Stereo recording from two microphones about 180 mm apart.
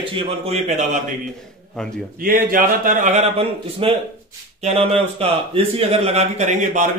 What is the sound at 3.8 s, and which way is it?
Speech, 30° right (ahead or behind).